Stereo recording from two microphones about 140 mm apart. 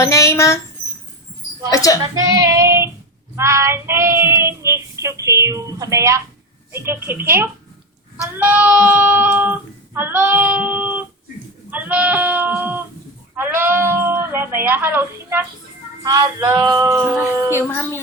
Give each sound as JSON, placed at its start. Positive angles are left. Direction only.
{"t": 0.0, "sound": "speech", "side_deg": 20}
{"t": 1.7, "sound": "speech", "side_deg": 25}
{"t": 2.0, "sound": "female singing", "side_deg": -25}
{"t": 3.3, "sound": "child singing", "side_deg": -20}
{"t": 6.8, "sound": "speech", "side_deg": -15}
{"t": 16.0, "sound": "child singing", "side_deg": -25}
{"t": 17.7, "sound": "speech", "side_deg": 15}